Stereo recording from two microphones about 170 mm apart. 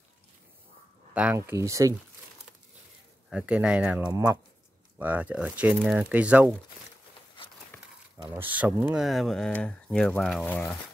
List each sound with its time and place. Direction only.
1.1 s speech: 10° right (ahead or behind)
3.3 s speech: 5° right (ahead or behind)
8.4 s speech: 10° right (ahead or behind)
9.0 s speech: centre (ahead or behind)